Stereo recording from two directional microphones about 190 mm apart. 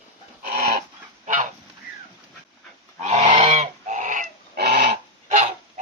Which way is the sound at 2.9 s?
35° right (ahead or behind).